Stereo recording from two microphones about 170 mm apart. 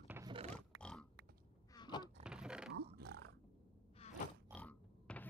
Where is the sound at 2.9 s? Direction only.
75° right (ahead or behind).